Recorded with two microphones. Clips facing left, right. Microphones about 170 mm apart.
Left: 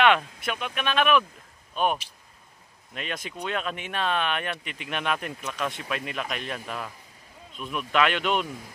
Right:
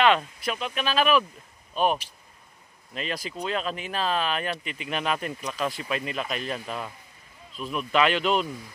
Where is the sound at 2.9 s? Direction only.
Centre (ahead or behind).